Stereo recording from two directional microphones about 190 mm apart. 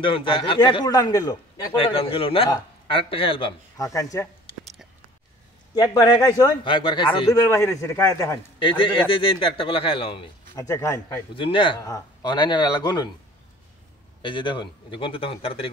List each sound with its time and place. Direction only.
0.0 s a man's voice: 25° left (ahead or behind)
1.8 s a man's voice: 30° left (ahead or behind)
3.8 s a man's voice: 15° left (ahead or behind)
5.8 s a man's voice: 20° left (ahead or behind)
10.5 s a man's voice: 15° left (ahead or behind)
11.3 s a man's voice: 25° left (ahead or behind)
14.2 s a man's voice: 25° left (ahead or behind)